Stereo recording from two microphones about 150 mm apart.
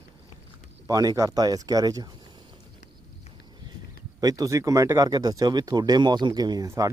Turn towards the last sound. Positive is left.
turn(degrees=-20)  # may be behind; listen again after turning